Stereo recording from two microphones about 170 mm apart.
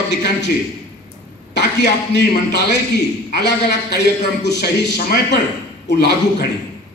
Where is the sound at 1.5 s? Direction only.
90° left.